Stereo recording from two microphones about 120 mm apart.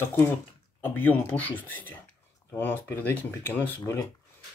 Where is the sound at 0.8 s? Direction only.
15° left (ahead or behind).